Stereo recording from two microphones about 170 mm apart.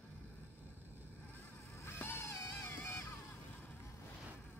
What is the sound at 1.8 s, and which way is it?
Vehicle, 15° left (ahead or behind).